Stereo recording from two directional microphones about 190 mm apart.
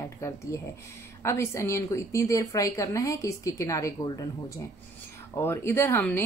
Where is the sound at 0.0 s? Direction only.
15° left (ahead or behind).